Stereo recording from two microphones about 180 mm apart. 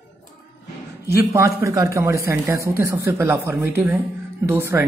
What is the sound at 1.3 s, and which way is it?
Speech, 15° right (ahead or behind).